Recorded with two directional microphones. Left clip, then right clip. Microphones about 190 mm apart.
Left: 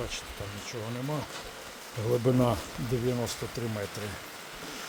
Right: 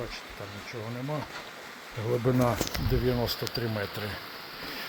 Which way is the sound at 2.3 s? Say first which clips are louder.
Right 1 dB; centre (ahead or behind).